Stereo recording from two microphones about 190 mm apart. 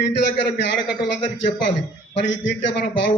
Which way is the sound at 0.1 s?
65° left (ahead or behind).